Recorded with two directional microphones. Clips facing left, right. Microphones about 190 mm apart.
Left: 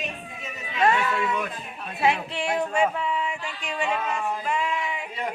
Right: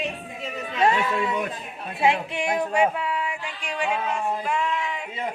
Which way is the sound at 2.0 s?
20° right (ahead or behind).